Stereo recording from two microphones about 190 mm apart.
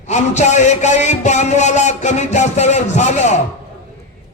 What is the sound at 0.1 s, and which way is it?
A man's voice, 40° left (ahead or behind).